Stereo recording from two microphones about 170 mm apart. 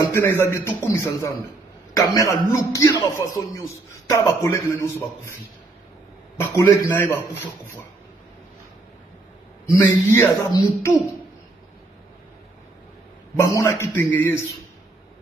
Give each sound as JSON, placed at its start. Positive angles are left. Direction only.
{"t": 0.0, "sound": "a man's voice", "side_deg": 15}
{"t": 6.5, "sound": "a man's voice", "side_deg": 15}
{"t": 9.8, "sound": "a man's voice", "side_deg": 15}
{"t": 13.6, "sound": "a man's voice", "side_deg": 15}